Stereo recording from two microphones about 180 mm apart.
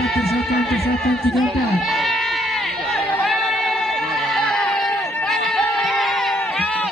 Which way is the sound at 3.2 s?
Centre (ahead or behind).